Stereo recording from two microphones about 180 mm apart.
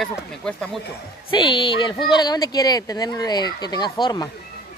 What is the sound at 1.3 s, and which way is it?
Speech, 25° left (ahead or behind).